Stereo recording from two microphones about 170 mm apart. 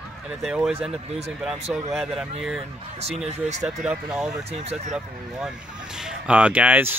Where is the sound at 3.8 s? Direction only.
5° right (ahead or behind).